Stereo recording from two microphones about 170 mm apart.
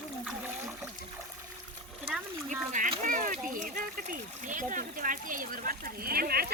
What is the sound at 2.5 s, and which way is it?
Speech, 50° right (ahead or behind).